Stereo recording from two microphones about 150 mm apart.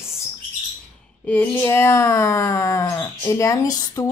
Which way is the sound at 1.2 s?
10° left (ahead or behind).